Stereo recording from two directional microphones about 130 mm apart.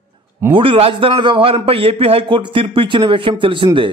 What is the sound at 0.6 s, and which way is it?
A man's voice, 45° right (ahead or behind).